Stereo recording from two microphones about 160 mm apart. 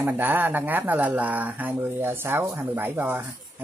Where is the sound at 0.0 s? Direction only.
10° right (ahead or behind).